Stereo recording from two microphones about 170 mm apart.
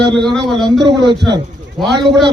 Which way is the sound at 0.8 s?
25° right (ahead or behind).